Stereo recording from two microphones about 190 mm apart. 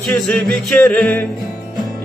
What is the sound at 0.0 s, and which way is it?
Music, centre (ahead or behind).